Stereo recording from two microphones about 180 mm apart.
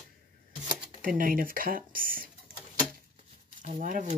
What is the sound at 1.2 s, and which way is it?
Speech, 50° right (ahead or behind).